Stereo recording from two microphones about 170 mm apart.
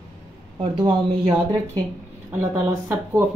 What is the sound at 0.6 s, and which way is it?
Speech, 25° right (ahead or behind).